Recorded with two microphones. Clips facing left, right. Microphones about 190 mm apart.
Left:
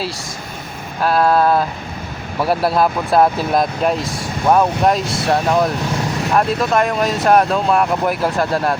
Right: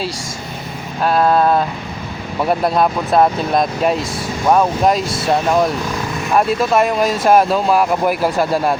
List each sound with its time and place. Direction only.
1.0 s speech: centre (ahead or behind)